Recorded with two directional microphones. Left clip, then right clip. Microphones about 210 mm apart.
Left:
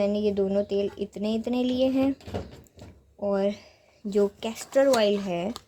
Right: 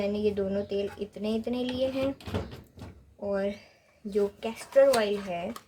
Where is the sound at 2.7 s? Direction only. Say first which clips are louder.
Left 2 dB; 35° left (ahead or behind).